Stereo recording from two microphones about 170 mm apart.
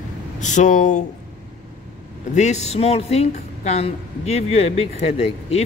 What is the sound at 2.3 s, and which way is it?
Speech, 40° left (ahead or behind).